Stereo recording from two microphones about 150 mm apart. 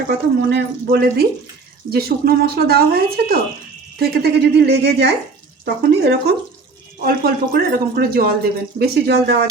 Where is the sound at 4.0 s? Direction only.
90° right.